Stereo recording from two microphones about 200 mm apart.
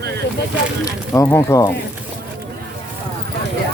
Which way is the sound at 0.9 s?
15° left (ahead or behind).